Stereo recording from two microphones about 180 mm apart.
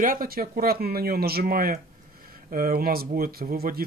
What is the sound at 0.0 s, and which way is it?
Speech, 50° right (ahead or behind).